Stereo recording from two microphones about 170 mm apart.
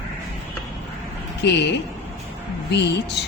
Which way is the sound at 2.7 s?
90° left.